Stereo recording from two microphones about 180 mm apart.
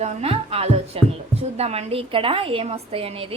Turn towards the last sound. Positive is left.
turn(degrees=-30)  # may be behind; listen again after turning